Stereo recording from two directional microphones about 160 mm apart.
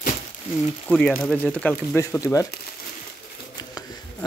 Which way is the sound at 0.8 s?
10° left (ahead or behind).